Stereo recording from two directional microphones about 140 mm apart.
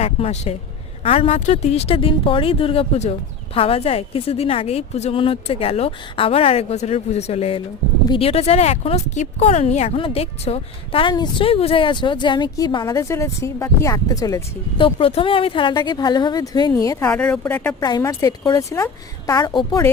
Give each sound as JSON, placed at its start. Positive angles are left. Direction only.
{"t": 0.0, "sound": "speech", "side_deg": 50}
{"t": 11.1, "sound": "speech", "side_deg": 35}
{"t": 14.8, "sound": "speech", "side_deg": 40}
{"t": 17.1, "sound": "speech", "side_deg": 5}
{"t": 17.7, "sound": "speech", "side_deg": 30}